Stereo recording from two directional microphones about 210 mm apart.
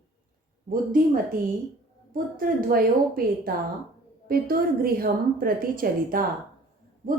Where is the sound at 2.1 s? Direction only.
40° right (ahead or behind).